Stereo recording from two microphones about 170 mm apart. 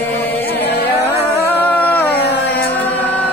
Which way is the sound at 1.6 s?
10° left (ahead or behind).